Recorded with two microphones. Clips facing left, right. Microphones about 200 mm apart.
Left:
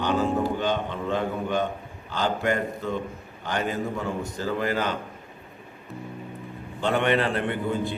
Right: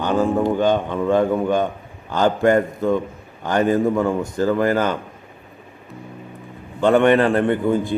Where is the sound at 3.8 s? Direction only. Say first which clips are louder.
Right 10 dB; 90° right.